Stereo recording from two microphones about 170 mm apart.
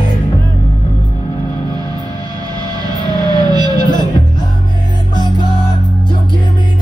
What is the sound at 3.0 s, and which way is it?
Music, 25° right (ahead or behind).